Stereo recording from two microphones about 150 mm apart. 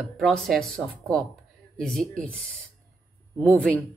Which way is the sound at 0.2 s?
Centre (ahead or behind).